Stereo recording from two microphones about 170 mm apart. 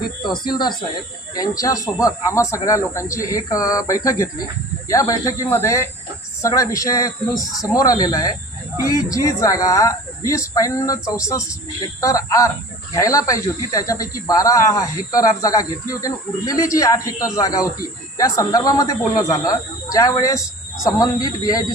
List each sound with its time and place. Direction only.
0.2 s speech: 25° left (ahead or behind)